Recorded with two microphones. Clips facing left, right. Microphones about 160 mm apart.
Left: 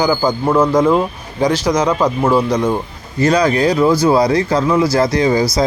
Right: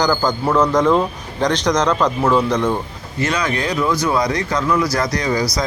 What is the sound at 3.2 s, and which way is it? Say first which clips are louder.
Speech: left 7 dB; 35° left (ahead or behind).